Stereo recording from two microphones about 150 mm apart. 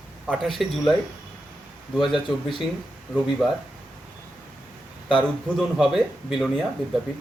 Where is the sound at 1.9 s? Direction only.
30° left (ahead or behind).